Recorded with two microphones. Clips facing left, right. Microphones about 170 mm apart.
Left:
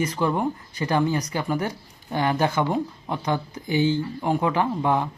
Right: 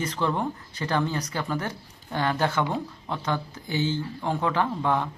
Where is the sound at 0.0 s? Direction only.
10° left (ahead or behind).